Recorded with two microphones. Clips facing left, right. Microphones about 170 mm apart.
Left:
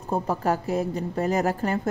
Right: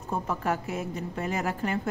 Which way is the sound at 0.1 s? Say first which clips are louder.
Left 5 dB; 35° left (ahead or behind).